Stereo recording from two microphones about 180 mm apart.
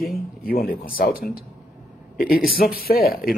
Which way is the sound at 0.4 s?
55° left (ahead or behind).